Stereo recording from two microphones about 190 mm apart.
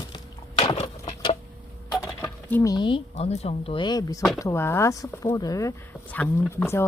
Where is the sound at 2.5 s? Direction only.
15° left (ahead or behind).